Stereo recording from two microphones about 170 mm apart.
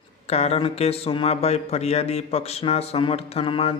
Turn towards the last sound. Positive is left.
turn(degrees=35)  # may be behind; listen again after turning